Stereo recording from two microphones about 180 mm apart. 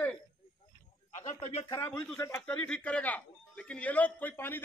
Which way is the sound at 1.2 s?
40° left (ahead or behind).